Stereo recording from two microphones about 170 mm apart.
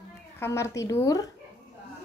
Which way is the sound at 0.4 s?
15° left (ahead or behind).